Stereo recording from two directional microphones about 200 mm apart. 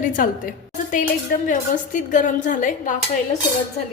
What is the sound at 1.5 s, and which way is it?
A woman's voice, 40° left (ahead or behind).